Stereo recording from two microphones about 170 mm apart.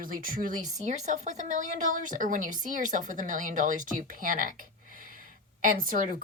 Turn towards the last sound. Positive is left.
turn(degrees=-55)  # may be behind; listen again after turning